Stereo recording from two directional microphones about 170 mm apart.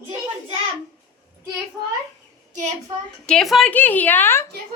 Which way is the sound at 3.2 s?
Centre (ahead or behind).